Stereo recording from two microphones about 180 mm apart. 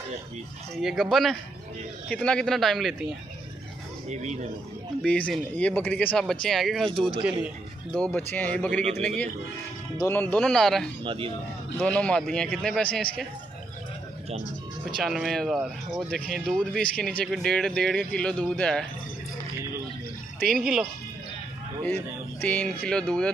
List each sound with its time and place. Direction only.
0.7 s speech: centre (ahead or behind)
4.1 s speech: 40° right (ahead or behind)
5.0 s speech: 5° left (ahead or behind)
8.1 s speech: 10° left (ahead or behind)
11.1 s speech: 30° right (ahead or behind)
11.8 s speech: 5° left (ahead or behind)
15.0 s speech: centre (ahead or behind)
20.4 s speech: centre (ahead or behind)